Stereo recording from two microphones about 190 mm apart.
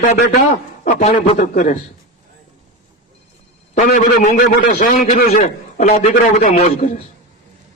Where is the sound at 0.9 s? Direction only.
35° left (ahead or behind).